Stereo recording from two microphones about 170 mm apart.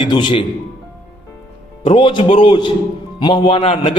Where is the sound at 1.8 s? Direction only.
30° left (ahead or behind).